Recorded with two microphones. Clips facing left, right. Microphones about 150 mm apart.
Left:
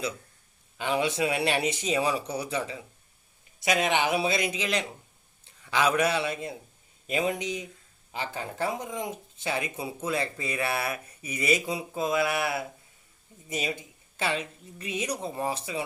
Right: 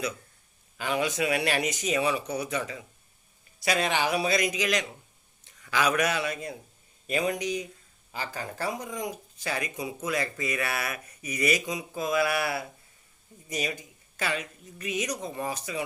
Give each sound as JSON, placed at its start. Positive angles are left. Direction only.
{"t": 0.8, "sound": "speech", "side_deg": 25}
{"t": 5.5, "sound": "a sound", "side_deg": 25}
{"t": 6.0, "sound": "speech", "side_deg": 30}
{"t": 13.7, "sound": "speech", "side_deg": 25}